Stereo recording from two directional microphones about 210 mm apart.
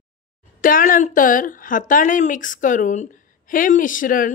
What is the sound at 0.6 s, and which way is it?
A woman's voice, 40° left (ahead or behind).